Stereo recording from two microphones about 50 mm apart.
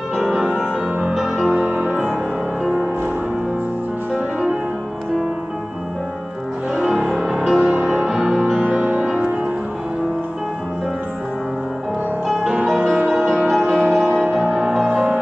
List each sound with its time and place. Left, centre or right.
0.2 s music: centre
1.5 s music: right
2.6 s music: centre
6.7 s music: centre
8.5 s music: right
12.5 s music: centre
13.7 s music: right; by 14.9 s centre